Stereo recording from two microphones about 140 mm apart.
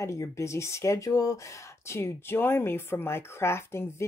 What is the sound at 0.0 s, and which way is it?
Speech, 20° left (ahead or behind).